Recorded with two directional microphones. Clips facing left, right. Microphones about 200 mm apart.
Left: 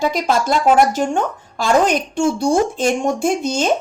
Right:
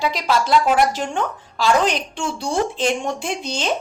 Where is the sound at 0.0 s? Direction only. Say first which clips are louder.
Left 3 dB; 45° left (ahead or behind).